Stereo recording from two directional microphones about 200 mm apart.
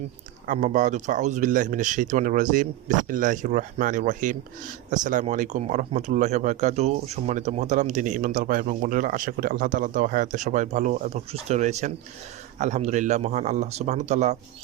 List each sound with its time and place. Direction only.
0.4 s speech: 40° right (ahead or behind)